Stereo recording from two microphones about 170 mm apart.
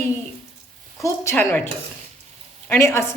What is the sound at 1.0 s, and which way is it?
A woman's voice, 15° left (ahead or behind).